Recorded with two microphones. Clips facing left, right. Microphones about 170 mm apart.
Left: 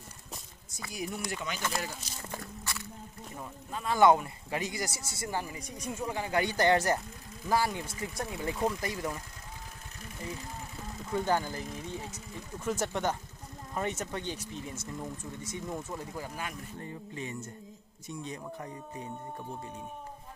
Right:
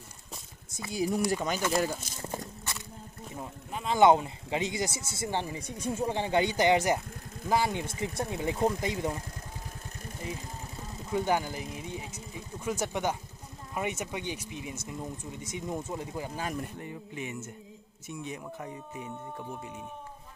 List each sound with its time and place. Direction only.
0.7 s speech: 25° right (ahead or behind); by 2.1 s 50° right (ahead or behind)
2.3 s biting: 20° right (ahead or behind)
3.7 s speech: 20° right (ahead or behind)
11.1 s speech: 15° right (ahead or behind)